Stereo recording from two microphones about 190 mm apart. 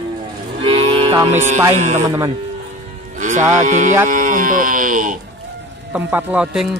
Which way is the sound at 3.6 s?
40° right (ahead or behind).